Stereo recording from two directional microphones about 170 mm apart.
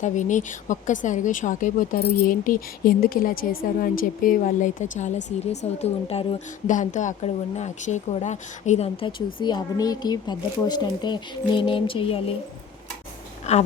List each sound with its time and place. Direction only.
0.0 s speech: 45° left (ahead or behind)
13.5 s speech: 40° left (ahead or behind)